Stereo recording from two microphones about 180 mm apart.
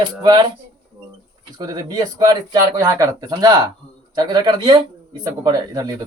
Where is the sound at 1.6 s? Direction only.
20° right (ahead or behind).